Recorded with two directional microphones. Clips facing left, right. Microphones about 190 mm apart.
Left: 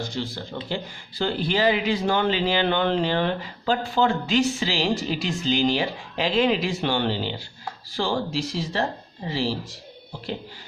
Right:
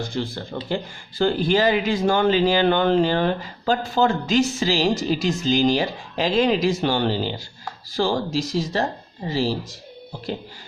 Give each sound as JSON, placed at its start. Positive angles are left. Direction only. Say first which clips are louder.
{"t": 0.1, "sound": "speech", "louder": "right 3 dB", "side_deg": -55}